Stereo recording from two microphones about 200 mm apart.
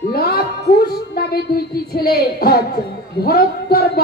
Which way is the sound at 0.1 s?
50° left (ahead or behind).